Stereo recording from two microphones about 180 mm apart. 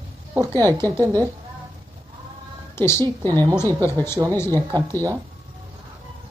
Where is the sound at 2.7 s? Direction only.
15° left (ahead or behind).